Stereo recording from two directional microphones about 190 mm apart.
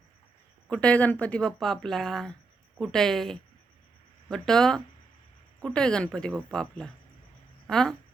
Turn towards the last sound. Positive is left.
turn(degrees=5)  # may be behind; listen again after turning